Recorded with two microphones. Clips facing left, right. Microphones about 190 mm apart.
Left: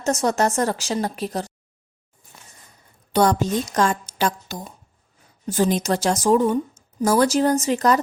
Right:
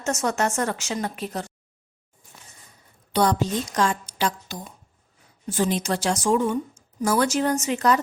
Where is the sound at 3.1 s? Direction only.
45° left (ahead or behind).